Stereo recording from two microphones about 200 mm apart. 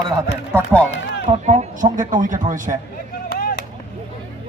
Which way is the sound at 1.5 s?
40° right (ahead or behind).